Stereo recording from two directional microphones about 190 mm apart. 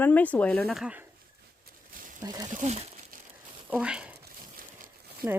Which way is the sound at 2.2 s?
20° right (ahead or behind).